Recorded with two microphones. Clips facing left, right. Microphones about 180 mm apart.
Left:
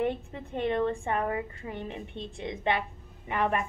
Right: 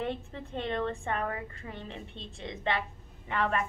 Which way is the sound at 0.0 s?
15° left (ahead or behind).